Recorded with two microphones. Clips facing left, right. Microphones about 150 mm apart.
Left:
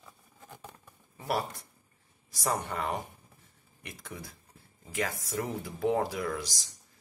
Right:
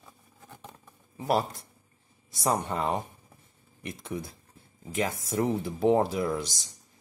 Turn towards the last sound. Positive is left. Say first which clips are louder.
# right 5 dB
turn(degrees=-25)  # may be behind; listen again after turning